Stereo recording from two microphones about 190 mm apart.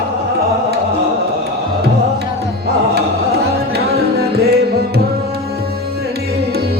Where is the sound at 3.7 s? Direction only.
60° right (ahead or behind).